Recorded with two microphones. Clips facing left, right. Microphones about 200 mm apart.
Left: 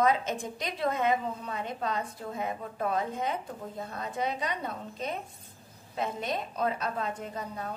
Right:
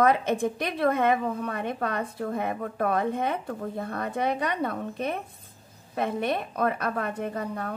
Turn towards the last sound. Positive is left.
turn(degrees=-60)  # may be behind; listen again after turning